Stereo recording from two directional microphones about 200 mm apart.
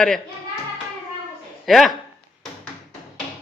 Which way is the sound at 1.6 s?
Centre (ahead or behind).